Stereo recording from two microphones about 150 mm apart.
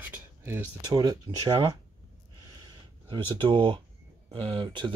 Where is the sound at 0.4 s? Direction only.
15° right (ahead or behind).